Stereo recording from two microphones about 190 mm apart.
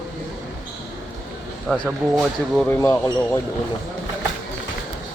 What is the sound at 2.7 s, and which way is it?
Speech, 15° left (ahead or behind).